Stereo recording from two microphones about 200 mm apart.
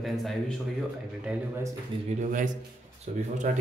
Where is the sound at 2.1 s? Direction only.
40° right (ahead or behind).